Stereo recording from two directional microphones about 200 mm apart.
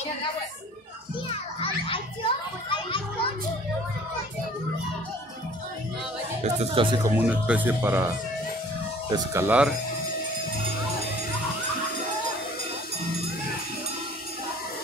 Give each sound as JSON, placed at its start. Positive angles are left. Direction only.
{"t": 1.3, "sound": "children playing", "side_deg": 25}
{"t": 6.4, "sound": "speech", "side_deg": -30}
{"t": 7.1, "sound": "speech", "side_deg": -10}
{"t": 9.1, "sound": "speech", "side_deg": -15}